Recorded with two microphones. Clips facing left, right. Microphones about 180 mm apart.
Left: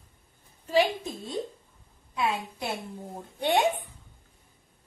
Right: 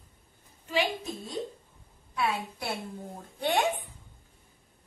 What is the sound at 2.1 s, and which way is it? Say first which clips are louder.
Speech: left 1 dB; 20° left (ahead or behind).